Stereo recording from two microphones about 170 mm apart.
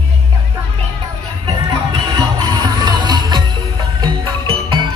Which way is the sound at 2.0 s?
25° right (ahead or behind).